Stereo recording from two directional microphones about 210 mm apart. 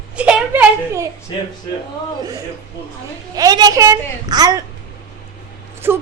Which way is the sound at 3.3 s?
20° right (ahead or behind).